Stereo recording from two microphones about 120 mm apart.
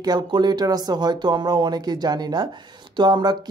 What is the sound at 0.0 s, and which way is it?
Speech, 35° right (ahead or behind).